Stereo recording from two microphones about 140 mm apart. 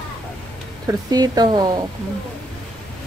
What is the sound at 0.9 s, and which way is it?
Speech, 25° right (ahead or behind).